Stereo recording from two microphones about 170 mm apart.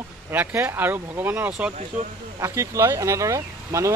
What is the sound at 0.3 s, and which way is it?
Speech, 10° right (ahead or behind).